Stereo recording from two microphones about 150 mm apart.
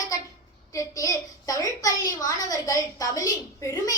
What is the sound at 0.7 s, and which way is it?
A woman's voice, 20° left (ahead or behind).